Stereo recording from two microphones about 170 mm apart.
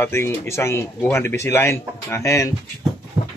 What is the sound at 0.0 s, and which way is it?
Speech, 15° left (ahead or behind).